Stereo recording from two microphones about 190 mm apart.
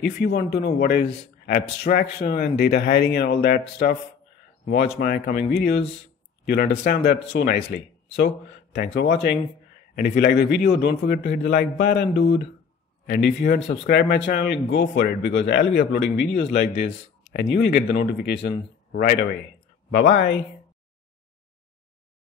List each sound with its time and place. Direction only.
0.0 s a man's voice: 55° left (ahead or behind)
6.4 s a man's voice: 55° left (ahead or behind)